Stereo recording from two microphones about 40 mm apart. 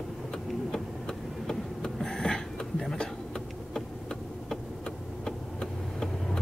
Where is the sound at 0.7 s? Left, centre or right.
Centre.